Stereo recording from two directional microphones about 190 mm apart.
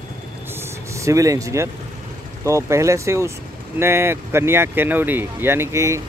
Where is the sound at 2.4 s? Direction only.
15° right (ahead or behind).